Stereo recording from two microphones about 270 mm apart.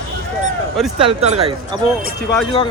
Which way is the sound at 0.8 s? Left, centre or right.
Centre.